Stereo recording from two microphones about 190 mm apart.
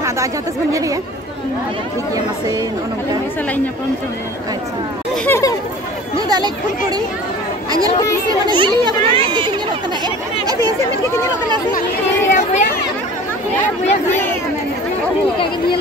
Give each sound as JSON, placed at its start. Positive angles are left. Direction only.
{"t": 0.0, "sound": "speech", "side_deg": -15}
{"t": 2.1, "sound": "speech", "side_deg": -20}
{"t": 5.1, "sound": "speech", "side_deg": 10}
{"t": 6.2, "sound": "speech", "side_deg": -20}
{"t": 8.3, "sound": "speech", "side_deg": -25}
{"t": 12.3, "sound": "chatter", "side_deg": 40}